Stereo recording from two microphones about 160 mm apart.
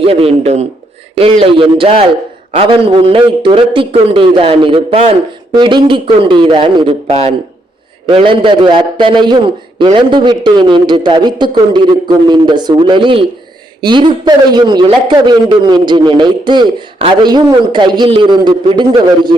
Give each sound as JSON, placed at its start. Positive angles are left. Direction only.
{"t": 0.0, "sound": "a man's voice", "side_deg": -40}